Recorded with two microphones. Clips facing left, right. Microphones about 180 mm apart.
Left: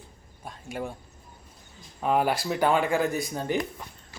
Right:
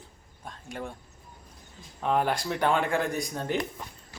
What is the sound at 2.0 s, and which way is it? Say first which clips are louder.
Speech: left 2 dB; 5° left (ahead or behind).